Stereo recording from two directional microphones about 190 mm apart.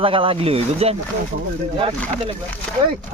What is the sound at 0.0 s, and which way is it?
Speech, 30° right (ahead or behind).